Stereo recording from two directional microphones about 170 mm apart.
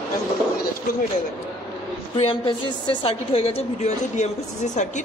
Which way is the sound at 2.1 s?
30° left (ahead or behind).